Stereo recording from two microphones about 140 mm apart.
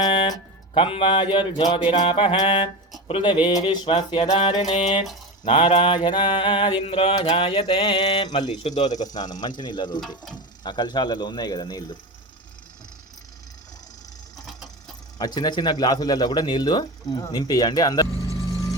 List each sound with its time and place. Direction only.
0.1 s speech: 40° left (ahead or behind)
2.0 s mantra: 40° left (ahead or behind)
8.6 s speech: 55° left (ahead or behind)
8.9 s speech: 30° left (ahead or behind)
10.3 s mantra: 30° left (ahead or behind)
15.2 s speech: 30° left (ahead or behind)